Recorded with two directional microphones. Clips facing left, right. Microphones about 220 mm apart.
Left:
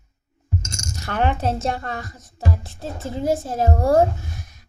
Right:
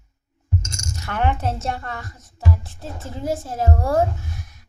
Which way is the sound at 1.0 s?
35° left (ahead or behind).